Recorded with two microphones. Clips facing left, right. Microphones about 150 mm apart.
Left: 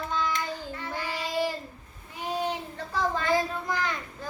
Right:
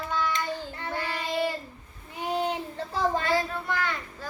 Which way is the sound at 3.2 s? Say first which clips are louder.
Left 1 dB; 15° left (ahead or behind).